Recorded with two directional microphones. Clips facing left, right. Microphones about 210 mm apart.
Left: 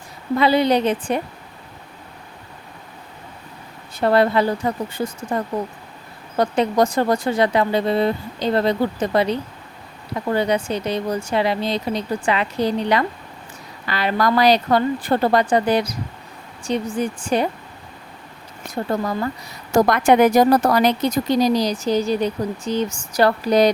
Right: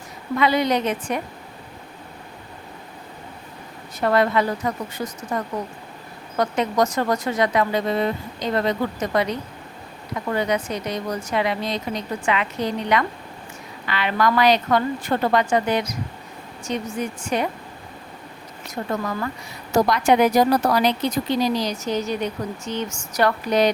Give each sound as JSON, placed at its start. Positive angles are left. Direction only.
{"t": 0.3, "sound": "speech", "side_deg": 30}
{"t": 4.0, "sound": "speech", "side_deg": 30}
{"t": 18.7, "sound": "speech", "side_deg": 30}
{"t": 19.7, "sound": "speech", "side_deg": 50}